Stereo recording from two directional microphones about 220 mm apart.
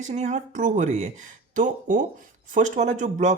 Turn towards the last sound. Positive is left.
turn(degrees=-35)  # may be behind; listen again after turning